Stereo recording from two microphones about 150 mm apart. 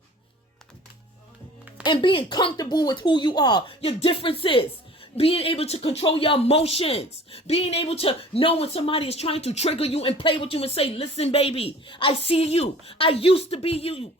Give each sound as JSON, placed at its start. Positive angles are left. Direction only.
{"t": 1.8, "sound": "speech", "side_deg": 30}
{"t": 3.8, "sound": "speech", "side_deg": 40}